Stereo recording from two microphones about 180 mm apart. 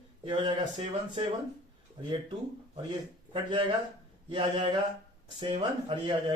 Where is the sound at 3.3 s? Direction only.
30° right (ahead or behind).